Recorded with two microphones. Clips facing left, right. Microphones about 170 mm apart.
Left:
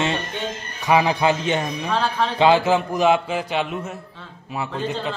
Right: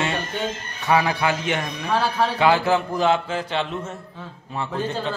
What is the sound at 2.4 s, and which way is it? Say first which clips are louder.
A man's voice: left 3 dB; 20° left (ahead or behind).